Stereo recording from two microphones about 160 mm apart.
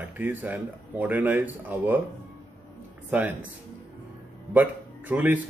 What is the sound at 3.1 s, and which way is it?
Speech, 10° right (ahead or behind).